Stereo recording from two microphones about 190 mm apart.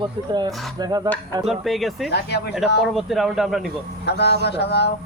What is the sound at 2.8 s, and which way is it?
Speech, centre (ahead or behind).